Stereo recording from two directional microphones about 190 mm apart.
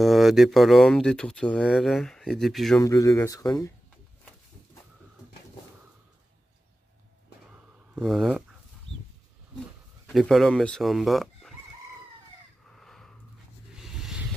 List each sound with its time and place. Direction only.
0.0 s speech: centre (ahead or behind)
2.8 s speech: 15° left (ahead or behind)
8.0 s speech: centre (ahead or behind)
10.0 s speech: centre (ahead or behind)
12.6 s crow: centre (ahead or behind)
13.8 s a sound: centre (ahead or behind)